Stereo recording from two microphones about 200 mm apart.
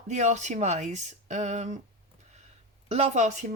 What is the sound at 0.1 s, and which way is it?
Speech, 35° right (ahead or behind).